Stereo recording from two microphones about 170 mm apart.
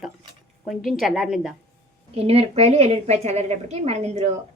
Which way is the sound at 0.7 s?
Centre (ahead or behind).